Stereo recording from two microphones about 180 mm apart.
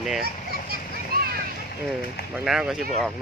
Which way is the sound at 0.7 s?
55° right (ahead or behind).